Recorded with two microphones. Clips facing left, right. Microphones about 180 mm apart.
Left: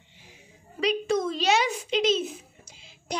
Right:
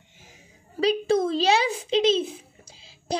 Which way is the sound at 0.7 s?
30° right (ahead or behind).